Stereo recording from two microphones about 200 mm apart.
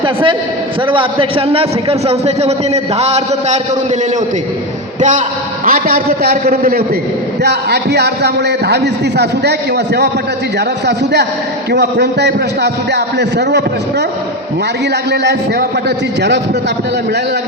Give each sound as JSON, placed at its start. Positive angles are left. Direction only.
{"t": 0.0, "sound": "a man's voice", "side_deg": -25}
{"t": 4.9, "sound": "a man's voice", "side_deg": -40}
{"t": 15.1, "sound": "a man's voice", "side_deg": -55}